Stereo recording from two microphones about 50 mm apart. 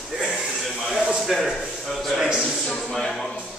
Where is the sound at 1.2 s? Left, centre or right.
Centre.